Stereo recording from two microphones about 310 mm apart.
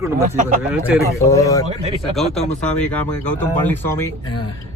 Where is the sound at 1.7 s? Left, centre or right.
Centre.